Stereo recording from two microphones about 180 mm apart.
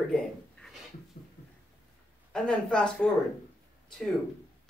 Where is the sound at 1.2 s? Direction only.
50° left (ahead or behind).